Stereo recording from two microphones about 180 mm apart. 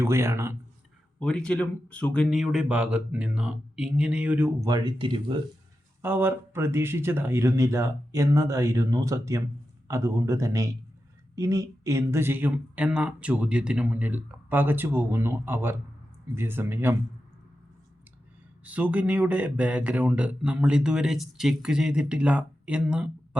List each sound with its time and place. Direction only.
0.0 s speech: 15° right (ahead or behind)
1.2 s speech: 5° left (ahead or behind); by 4.7 s 10° right (ahead or behind)
4.7 s speech: 25° right (ahead or behind)
6.0 s speech: 10° right (ahead or behind)
18.6 s speech: 10° right (ahead or behind)